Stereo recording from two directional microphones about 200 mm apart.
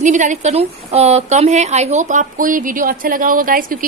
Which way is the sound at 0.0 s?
40° right (ahead or behind).